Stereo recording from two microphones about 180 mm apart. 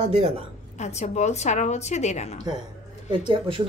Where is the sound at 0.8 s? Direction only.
40° left (ahead or behind).